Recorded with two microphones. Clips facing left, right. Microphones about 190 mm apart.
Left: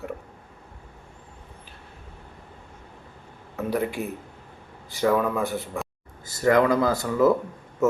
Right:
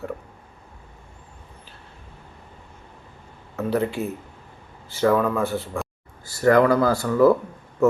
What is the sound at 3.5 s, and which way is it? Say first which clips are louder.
Speech: right 3 dB; 15° left (ahead or behind).